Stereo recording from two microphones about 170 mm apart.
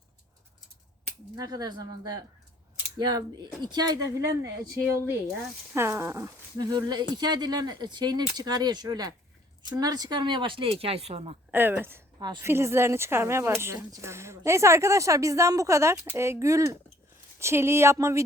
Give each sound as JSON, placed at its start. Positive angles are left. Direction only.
{"t": 1.4, "sound": "speech", "side_deg": -25}
{"t": 11.5, "sound": "speech", "side_deg": -10}
{"t": 12.2, "sound": "speech", "side_deg": -25}
{"t": 12.5, "sound": "speech", "side_deg": -15}